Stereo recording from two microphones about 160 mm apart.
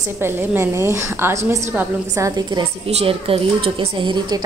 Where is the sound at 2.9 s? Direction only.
40° right (ahead or behind).